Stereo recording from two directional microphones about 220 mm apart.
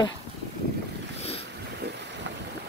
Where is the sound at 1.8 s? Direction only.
50° right (ahead or behind).